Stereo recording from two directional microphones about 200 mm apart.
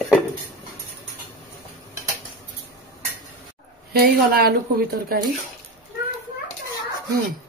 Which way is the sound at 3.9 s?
50° right (ahead or behind).